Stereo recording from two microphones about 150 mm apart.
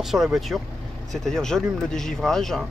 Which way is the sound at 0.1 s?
Centre (ahead or behind).